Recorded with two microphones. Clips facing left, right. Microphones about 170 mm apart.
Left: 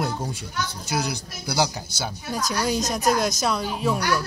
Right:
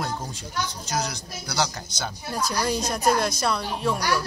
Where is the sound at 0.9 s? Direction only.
10° left (ahead or behind).